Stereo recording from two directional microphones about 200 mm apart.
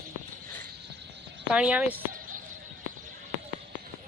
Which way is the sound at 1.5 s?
5° right (ahead or behind).